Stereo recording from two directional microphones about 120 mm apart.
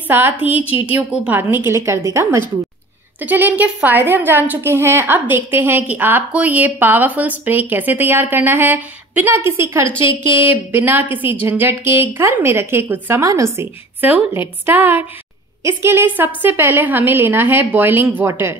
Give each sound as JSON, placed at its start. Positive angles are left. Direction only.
{"t": 0.1, "sound": "a woman's voice", "side_deg": -15}
{"t": 14.0, "sound": "a woman's voice", "side_deg": -15}